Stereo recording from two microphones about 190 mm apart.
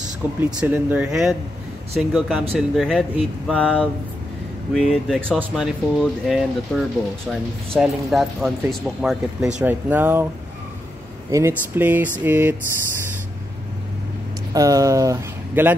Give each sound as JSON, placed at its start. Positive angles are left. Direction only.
{"t": 0.2, "sound": "speech", "side_deg": -10}
{"t": 11.2, "sound": "speech", "side_deg": -15}
{"t": 14.5, "sound": "speech", "side_deg": -20}